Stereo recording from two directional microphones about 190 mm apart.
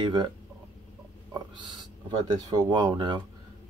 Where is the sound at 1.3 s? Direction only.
20° right (ahead or behind).